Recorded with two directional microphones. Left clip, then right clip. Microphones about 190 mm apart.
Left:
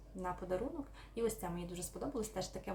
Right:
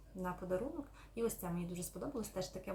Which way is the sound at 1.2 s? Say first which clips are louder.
Left 1 dB; 15° left (ahead or behind).